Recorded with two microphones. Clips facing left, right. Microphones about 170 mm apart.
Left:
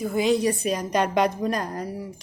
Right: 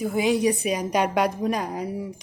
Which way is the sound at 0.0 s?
10° right (ahead or behind).